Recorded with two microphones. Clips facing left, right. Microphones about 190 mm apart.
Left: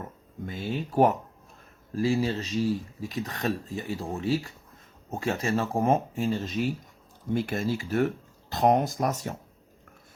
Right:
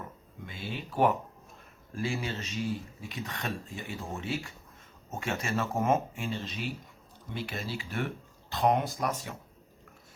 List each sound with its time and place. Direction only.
0.4 s speech: 45° left (ahead or behind)